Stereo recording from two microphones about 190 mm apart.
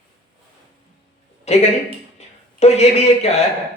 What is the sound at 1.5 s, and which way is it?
Speech, 35° left (ahead or behind).